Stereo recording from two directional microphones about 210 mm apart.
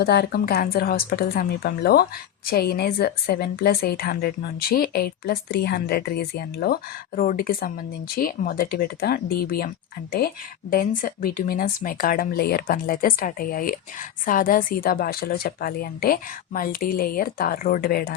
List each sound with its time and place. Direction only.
0.0 s a woman's voice: 50° left (ahead or behind)